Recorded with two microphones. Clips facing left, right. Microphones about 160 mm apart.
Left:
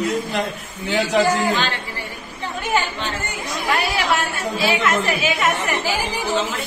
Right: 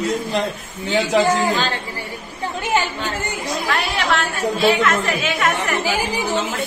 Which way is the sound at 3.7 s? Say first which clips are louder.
Left 1 dB; 5° left (ahead or behind).